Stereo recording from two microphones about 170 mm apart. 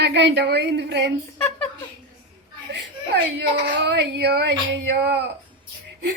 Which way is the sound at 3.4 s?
70° right (ahead or behind).